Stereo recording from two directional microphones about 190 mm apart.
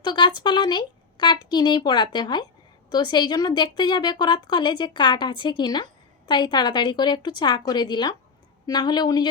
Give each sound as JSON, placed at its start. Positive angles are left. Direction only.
{"t": 0.0, "sound": "a woman's voice", "side_deg": 25}